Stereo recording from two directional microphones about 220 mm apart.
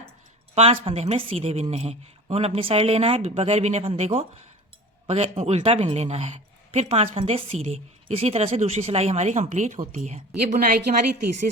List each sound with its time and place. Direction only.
0.5 s a woman's voice: 30° right (ahead or behind)